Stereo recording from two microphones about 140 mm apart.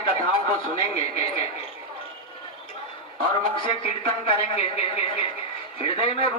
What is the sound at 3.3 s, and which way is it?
A man's voice, 40° left (ahead or behind).